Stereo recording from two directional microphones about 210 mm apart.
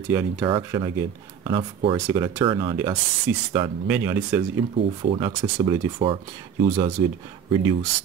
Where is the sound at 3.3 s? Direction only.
10° right (ahead or behind).